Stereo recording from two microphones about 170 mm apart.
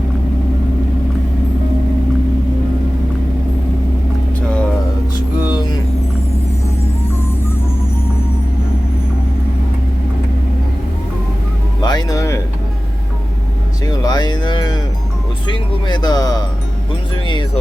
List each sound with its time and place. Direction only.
11.8 s music: 25° left (ahead or behind)
13.8 s cattle: 25° left (ahead or behind)
15.4 s music: 25° left (ahead or behind)